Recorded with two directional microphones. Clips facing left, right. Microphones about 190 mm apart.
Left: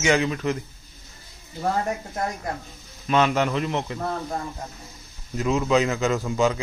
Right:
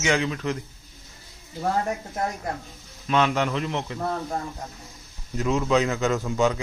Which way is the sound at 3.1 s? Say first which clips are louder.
Left 2 dB; 5° left (ahead or behind).